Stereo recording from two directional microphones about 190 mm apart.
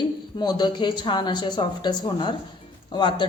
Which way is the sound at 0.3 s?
20° left (ahead or behind).